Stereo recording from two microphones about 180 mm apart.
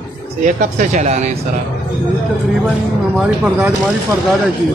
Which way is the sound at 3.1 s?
10° right (ahead or behind).